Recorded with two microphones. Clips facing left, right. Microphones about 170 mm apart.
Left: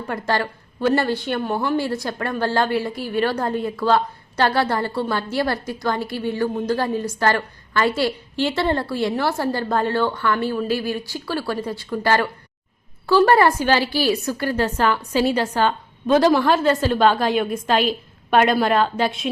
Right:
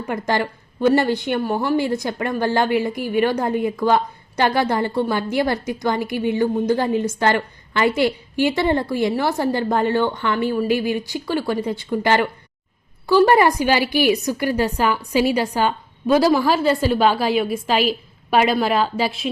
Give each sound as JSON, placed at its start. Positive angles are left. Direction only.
{"t": 0.0, "sound": "a woman's voice", "side_deg": -15}